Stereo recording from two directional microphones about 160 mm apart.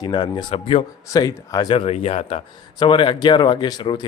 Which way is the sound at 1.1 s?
25° left (ahead or behind).